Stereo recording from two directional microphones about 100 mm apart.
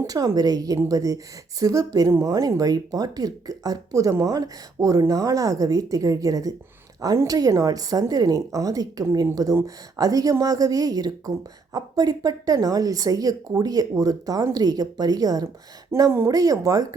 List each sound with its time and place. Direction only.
0.1 s speech: 40° right (ahead or behind)
16.0 s speech: 30° right (ahead or behind)